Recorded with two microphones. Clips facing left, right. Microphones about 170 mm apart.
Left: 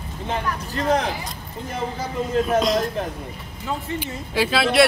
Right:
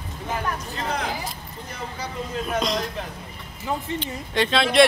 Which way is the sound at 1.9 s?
50° left (ahead or behind).